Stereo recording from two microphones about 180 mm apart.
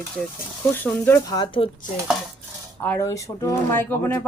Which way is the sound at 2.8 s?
10° left (ahead or behind).